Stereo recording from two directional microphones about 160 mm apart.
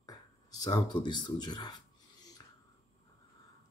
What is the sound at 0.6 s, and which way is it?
Speech, 25° left (ahead or behind).